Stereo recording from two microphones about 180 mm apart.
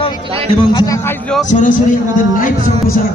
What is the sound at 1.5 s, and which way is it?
Speech, 45° left (ahead or behind).